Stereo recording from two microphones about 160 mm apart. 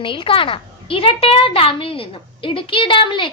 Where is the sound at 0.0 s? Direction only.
30° left (ahead or behind).